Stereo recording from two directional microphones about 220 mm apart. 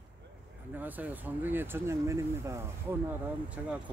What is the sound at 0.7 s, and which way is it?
Speech, 10° right (ahead or behind).